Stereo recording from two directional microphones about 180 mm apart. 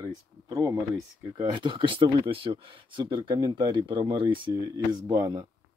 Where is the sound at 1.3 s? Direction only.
25° right (ahead or behind).